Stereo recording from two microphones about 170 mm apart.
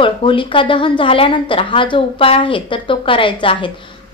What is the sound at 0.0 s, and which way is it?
Speech, 30° left (ahead or behind).